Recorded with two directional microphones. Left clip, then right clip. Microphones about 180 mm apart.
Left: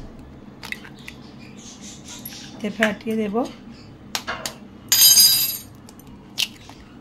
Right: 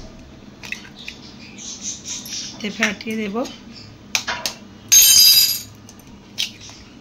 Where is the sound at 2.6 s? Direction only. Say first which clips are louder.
Even; 25° left (ahead or behind).